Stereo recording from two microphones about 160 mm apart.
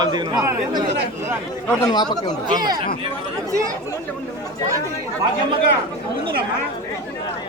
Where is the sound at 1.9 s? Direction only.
25° left (ahead or behind).